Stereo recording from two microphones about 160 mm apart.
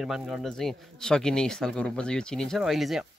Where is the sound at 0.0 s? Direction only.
Centre (ahead or behind).